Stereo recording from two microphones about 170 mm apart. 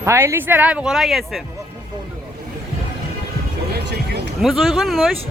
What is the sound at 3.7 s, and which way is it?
Music, 80° right.